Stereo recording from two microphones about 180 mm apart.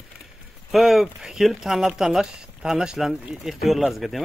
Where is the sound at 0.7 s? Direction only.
Centre (ahead or behind).